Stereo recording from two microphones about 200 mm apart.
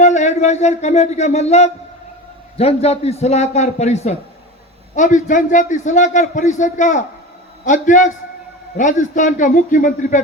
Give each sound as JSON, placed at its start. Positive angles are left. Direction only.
{"t": 0.0, "sound": "a man's voice", "side_deg": 35}